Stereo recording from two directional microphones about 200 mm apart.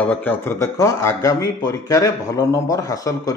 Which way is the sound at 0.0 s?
10° left (ahead or behind).